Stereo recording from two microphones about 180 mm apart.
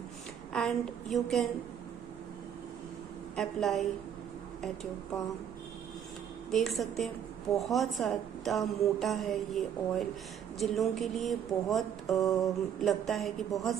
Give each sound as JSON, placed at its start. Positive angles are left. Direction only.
{"t": 0.5, "sound": "music", "side_deg": 0}
{"t": 3.3, "sound": "music", "side_deg": 0}
{"t": 6.5, "sound": "music", "side_deg": 0}